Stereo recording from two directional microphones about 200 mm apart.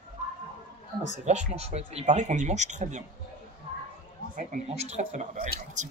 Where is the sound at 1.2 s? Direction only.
35° right (ahead or behind).